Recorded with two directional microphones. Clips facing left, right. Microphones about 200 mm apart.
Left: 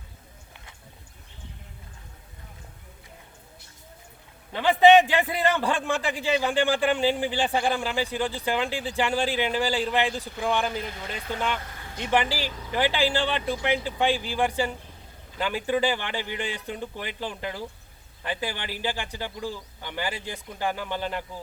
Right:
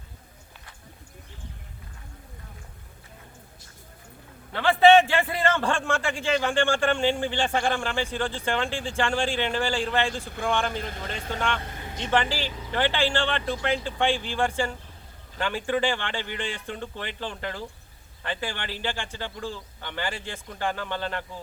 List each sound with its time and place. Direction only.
4.5 s a man's voice: 15° left (ahead or behind)
10.7 s speech: 50° right (ahead or behind)
11.3 s a man's voice: 5° left (ahead or behind)
11.6 s vehicle: 20° right (ahead or behind)
12.1 s a man's voice: 10° left (ahead or behind)